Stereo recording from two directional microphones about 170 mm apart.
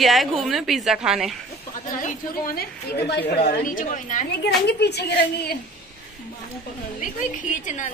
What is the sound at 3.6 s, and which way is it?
Speech, 50° left (ahead or behind).